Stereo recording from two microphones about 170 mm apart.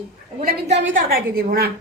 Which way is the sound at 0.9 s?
60° right (ahead or behind).